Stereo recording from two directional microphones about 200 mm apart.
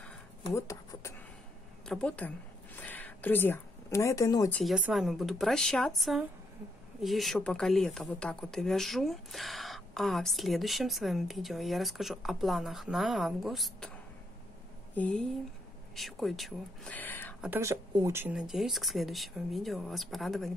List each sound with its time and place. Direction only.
0.6 s a woman's voice: 15° left (ahead or behind)
4.7 s speech: 5° right (ahead or behind)
15.0 s speech: 5° left (ahead or behind)
17.4 s speech: 10° right (ahead or behind)